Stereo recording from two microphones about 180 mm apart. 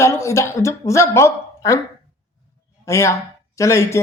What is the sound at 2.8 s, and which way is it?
Speech, 15° left (ahead or behind).